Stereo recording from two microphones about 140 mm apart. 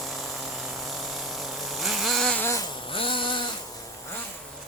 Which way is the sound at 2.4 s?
20° left (ahead or behind).